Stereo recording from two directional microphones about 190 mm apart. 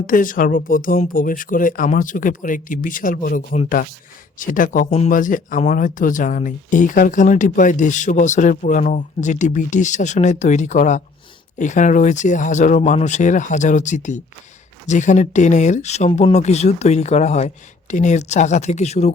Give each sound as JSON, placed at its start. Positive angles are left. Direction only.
{"t": 0.1, "sound": "speech", "side_deg": 45}